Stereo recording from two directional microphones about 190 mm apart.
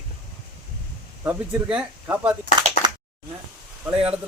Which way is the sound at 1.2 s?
10° right (ahead or behind).